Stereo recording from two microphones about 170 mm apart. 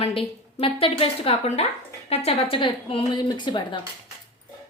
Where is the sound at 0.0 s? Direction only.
35° left (ahead or behind).